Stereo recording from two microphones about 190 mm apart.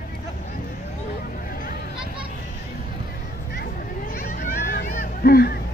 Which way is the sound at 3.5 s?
45° left (ahead or behind).